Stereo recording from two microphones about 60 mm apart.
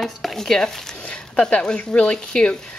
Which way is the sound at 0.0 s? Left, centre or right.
Centre.